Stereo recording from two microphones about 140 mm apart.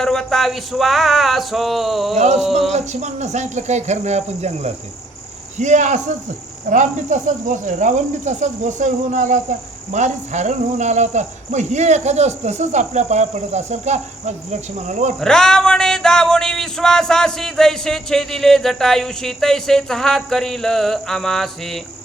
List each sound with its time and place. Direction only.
0.0 s music: 5° left (ahead or behind)
2.1 s speech: 55° right (ahead or behind)
2.4 s music: centre (ahead or behind)
2.7 s speech: 55° right (ahead or behind)
15.2 s music: 5° left (ahead or behind)